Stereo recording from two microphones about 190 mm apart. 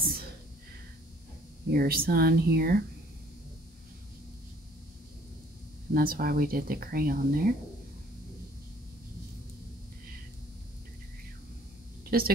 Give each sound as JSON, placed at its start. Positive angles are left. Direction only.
{"t": 1.7, "sound": "speech", "side_deg": -50}
{"t": 5.9, "sound": "speech", "side_deg": -50}
{"t": 12.0, "sound": "speech", "side_deg": -50}